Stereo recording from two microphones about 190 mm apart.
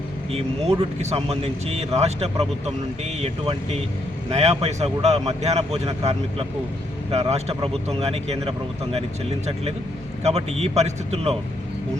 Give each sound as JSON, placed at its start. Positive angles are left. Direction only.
{"t": 0.3, "sound": "a man's voice", "side_deg": -30}
{"t": 7.1, "sound": "a man's voice", "side_deg": -35}
{"t": 10.2, "sound": "a man's voice", "side_deg": -35}